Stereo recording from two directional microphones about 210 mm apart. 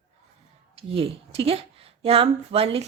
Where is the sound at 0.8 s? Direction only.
25° right (ahead or behind).